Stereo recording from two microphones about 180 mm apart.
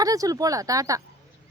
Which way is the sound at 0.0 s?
20° right (ahead or behind).